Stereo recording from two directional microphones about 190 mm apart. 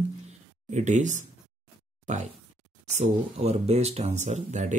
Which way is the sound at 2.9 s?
35° right (ahead or behind).